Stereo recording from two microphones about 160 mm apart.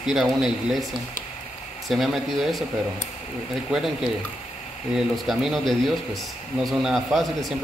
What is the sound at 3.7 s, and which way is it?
Speech, 5° right (ahead or behind).